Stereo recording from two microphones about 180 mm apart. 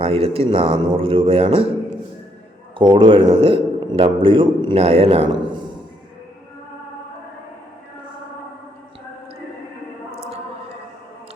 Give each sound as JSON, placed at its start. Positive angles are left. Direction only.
{"t": 0.0, "sound": "a man's voice", "side_deg": -30}
{"t": 2.7, "sound": "a man's voice", "side_deg": -30}
{"t": 10.1, "sound": "a sound", "side_deg": -35}